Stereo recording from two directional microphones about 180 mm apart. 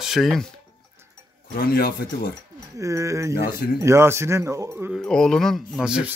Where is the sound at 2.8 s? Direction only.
15° right (ahead or behind).